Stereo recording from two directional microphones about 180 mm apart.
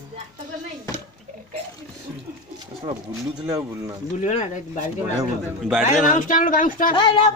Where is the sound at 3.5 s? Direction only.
15° right (ahead or behind).